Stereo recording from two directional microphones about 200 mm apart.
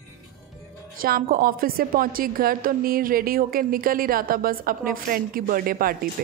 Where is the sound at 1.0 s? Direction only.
50° right (ahead or behind).